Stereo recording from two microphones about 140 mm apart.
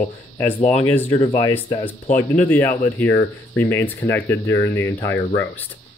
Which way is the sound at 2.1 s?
10° left (ahead or behind).